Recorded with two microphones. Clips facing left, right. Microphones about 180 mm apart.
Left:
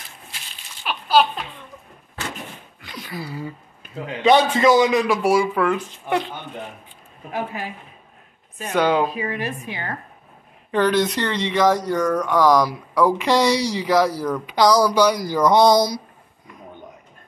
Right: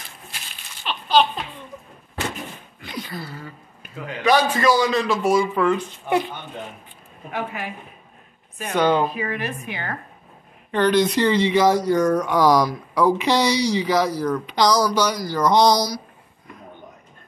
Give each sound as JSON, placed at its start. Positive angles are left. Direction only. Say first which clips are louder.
{"t": 0.8, "sound": "a sound", "louder": "left 1 dB", "side_deg": 10}
{"t": 3.0, "sound": "speech", "louder": "left 2 dB", "side_deg": 5}
{"t": 3.9, "sound": "a man's voice", "louder": "left 3 dB", "side_deg": 25}
{"t": 8.7, "sound": "speech", "louder": "even", "side_deg": 5}
{"t": 9.1, "sound": "a man's voice", "louder": "left 1 dB", "side_deg": 30}
{"t": 10.7, "sound": "speech", "louder": "right 1 dB", "side_deg": 0}
{"t": 15.1, "sound": "a sound", "louder": "left 2 dB", "side_deg": 10}
{"t": 15.7, "sound": "a man's voice", "louder": "left 4 dB", "side_deg": 25}